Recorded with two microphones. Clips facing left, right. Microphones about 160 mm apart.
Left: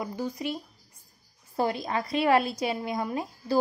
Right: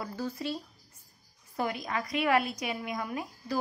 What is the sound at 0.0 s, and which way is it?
Speech, 15° left (ahead or behind).